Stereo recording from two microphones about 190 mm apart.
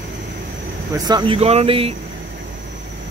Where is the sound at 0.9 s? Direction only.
20° right (ahead or behind).